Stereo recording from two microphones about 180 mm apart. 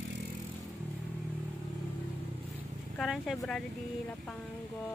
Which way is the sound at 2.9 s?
Centre (ahead or behind).